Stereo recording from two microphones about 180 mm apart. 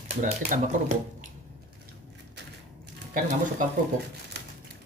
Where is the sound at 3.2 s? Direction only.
45° right (ahead or behind).